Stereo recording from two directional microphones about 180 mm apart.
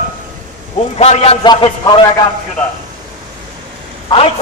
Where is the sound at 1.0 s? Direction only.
35° left (ahead or behind).